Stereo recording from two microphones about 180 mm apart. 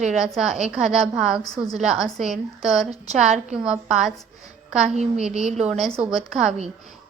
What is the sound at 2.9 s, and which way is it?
Speech, 40° right (ahead or behind).